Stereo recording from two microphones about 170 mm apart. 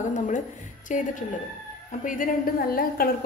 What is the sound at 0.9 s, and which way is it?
A woman's voice, 50° left (ahead or behind).